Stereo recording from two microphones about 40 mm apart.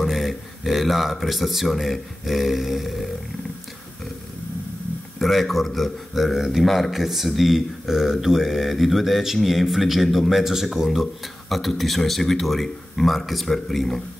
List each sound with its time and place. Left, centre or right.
0.0 s a man's voice: centre
5.2 s a man's voice: centre